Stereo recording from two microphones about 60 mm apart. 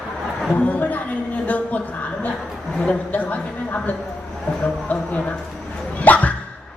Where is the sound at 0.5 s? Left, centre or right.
Left.